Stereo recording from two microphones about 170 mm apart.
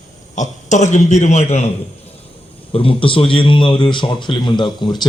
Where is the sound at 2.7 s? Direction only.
30° left (ahead or behind).